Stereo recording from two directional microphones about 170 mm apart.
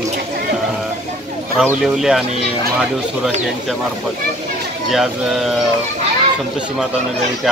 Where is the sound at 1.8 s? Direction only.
Centre (ahead or behind).